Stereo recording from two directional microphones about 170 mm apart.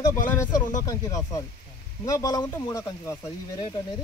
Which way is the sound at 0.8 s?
20° left (ahead or behind).